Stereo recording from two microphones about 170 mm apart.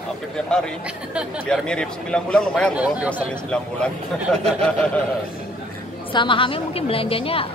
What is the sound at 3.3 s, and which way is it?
A man's voice, 5° left (ahead or behind).